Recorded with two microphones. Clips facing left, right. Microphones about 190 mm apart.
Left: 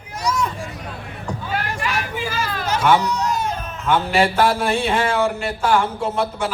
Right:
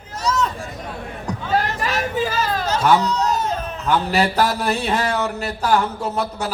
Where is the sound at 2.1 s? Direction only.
40° right (ahead or behind).